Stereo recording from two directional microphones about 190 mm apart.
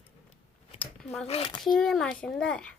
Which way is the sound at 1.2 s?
30° left (ahead or behind).